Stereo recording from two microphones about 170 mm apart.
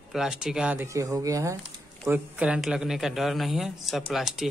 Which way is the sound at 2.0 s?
10° right (ahead or behind).